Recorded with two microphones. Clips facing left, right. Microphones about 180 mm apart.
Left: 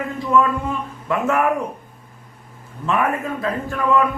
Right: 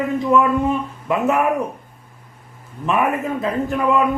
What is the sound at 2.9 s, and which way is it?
A man's voice, 20° right (ahead or behind).